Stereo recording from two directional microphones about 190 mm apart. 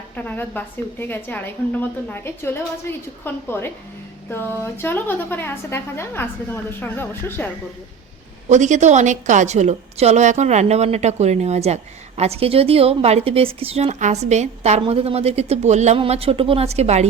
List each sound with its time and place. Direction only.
0.2 s a woman's voice: 10° left (ahead or behind)
8.4 s a woman's voice: 40° right (ahead or behind)